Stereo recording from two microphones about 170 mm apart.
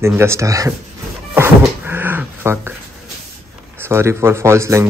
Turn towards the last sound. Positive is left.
turn(degrees=-15)  # may be behind; listen again after turning